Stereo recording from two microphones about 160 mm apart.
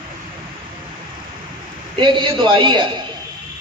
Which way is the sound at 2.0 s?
30° right (ahead or behind).